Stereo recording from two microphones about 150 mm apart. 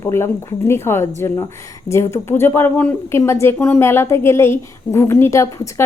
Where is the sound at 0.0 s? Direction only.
15° left (ahead or behind).